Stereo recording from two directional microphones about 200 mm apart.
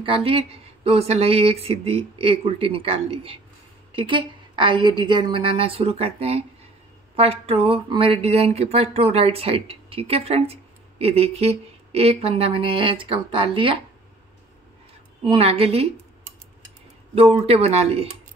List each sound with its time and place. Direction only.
0.0 s speech: 25° right (ahead or behind)
15.2 s speech: 30° right (ahead or behind)
17.1 s speech: 30° right (ahead or behind)